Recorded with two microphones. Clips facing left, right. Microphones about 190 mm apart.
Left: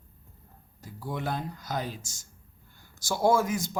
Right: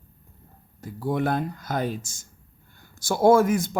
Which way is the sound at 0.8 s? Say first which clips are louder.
Right 9 dB; 55° right (ahead or behind).